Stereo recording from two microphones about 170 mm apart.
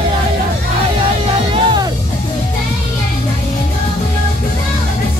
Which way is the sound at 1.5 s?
25° right (ahead or behind).